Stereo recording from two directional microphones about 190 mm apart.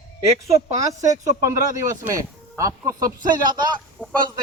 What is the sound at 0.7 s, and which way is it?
Speech, 20° right (ahead or behind).